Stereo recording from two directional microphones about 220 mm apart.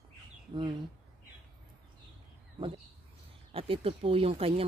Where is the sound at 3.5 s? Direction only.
25° right (ahead or behind).